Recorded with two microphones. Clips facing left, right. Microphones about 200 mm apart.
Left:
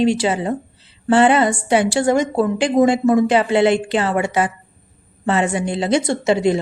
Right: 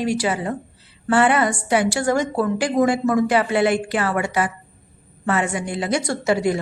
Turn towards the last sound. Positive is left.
turn(degrees=25)  # may be behind; listen again after turning